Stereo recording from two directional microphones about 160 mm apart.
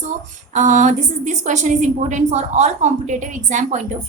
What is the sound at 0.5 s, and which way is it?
A woman's voice, 50° right (ahead or behind).